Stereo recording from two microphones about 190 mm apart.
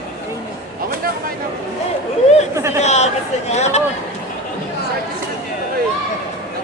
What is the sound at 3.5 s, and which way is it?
Speech, 35° left (ahead or behind).